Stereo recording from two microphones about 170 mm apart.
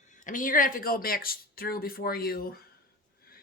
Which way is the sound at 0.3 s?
50° left (ahead or behind).